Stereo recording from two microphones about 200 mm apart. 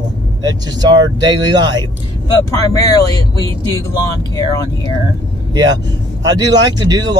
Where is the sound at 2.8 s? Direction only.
20° left (ahead or behind).